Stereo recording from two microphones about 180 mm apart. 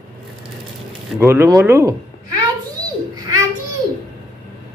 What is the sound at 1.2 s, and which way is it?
Speech, 15° right (ahead or behind).